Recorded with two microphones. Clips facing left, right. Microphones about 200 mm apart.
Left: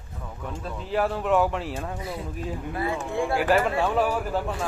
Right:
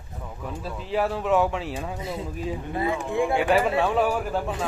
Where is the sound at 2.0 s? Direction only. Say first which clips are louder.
Right 2 dB; 25° right (ahead or behind).